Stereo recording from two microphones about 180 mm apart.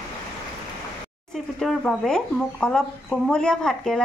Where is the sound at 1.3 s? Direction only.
Centre (ahead or behind).